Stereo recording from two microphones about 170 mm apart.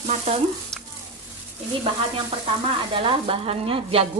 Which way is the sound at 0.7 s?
5° left (ahead or behind).